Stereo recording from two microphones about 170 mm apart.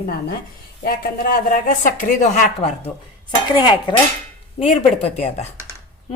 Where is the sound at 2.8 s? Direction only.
30° left (ahead or behind).